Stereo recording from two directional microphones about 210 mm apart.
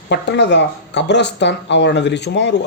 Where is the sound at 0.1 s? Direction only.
55° left (ahead or behind).